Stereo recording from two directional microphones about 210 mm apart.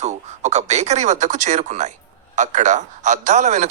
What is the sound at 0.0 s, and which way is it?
A man's voice, 30° right (ahead or behind).